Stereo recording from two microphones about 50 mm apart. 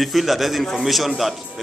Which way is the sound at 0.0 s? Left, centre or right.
Centre.